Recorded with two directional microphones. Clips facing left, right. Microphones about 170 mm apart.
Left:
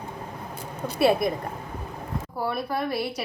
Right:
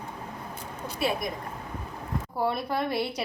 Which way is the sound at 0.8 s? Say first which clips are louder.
Left 8 dB; 65° left (ahead or behind).